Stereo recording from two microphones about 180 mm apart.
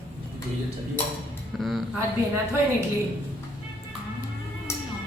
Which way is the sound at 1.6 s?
Centre (ahead or behind).